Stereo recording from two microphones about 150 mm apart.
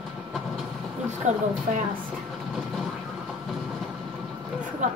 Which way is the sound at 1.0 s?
50° right (ahead or behind).